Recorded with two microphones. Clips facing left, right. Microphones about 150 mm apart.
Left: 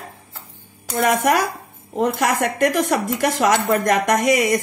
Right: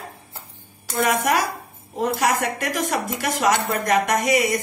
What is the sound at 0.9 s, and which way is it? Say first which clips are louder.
Speech: left 3 dB; 50° left (ahead or behind).